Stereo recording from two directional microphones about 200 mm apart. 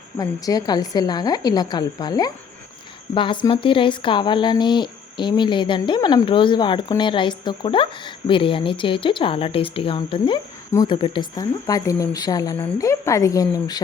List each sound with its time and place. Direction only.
0.2 s a woman's voice: 20° left (ahead or behind)